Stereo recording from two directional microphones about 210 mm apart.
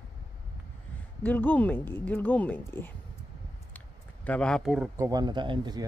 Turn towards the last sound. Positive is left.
turn(degrees=-20)  # may be behind; listen again after turning